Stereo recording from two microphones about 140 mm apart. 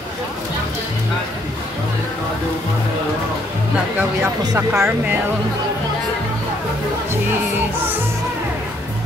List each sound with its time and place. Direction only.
4.5 s speech: 20° right (ahead or behind)